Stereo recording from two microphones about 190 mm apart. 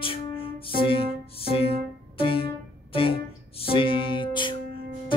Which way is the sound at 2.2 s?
30° left (ahead or behind).